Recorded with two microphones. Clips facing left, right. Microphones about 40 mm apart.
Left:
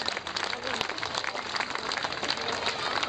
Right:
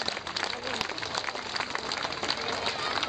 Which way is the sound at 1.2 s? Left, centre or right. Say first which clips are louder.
Left 2 dB; centre.